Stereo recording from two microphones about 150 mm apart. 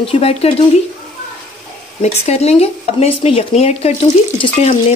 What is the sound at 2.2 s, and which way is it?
Speech, 45° left (ahead or behind).